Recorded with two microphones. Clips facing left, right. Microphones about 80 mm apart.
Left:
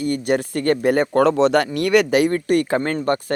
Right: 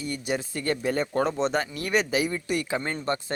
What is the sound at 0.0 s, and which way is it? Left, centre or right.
Speech, left.